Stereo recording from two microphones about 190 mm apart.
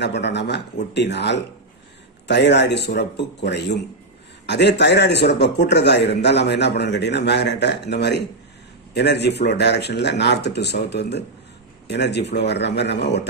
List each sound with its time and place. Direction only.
0.0 s a man's voice: 65° left (ahead or behind)